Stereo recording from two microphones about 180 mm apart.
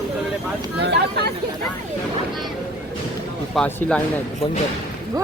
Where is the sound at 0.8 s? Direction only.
65° right (ahead or behind).